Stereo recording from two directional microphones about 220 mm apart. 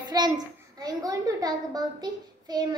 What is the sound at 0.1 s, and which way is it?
Child singing, 15° right (ahead or behind).